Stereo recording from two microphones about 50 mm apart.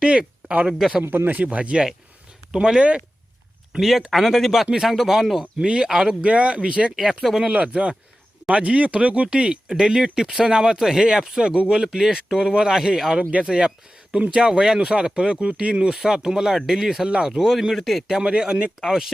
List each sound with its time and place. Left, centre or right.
0.0 s speech: centre
1.0 s speech: right
1.3 s speech: right
2.5 s speech: centre
3.7 s speech: centre
5.5 s speech: centre
6.9 s speech: centre
7.4 s speech: right
11.9 s speech: centre
12.1 s speech: centre
17.5 s speech: centre
18.2 s speech: centre
18.8 s speech: centre